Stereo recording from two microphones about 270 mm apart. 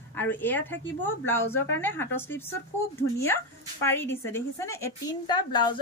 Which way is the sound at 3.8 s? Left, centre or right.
Centre.